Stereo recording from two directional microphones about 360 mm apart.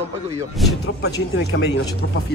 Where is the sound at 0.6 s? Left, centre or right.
Centre.